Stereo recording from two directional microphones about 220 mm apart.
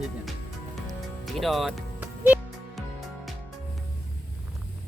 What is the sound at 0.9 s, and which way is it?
Music, centre (ahead or behind).